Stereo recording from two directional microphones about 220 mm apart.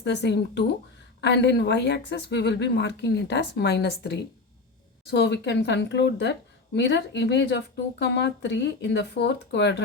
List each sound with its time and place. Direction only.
0.0 s speech: 50° left (ahead or behind)